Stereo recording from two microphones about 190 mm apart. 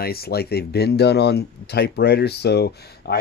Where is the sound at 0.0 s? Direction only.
55° left (ahead or behind).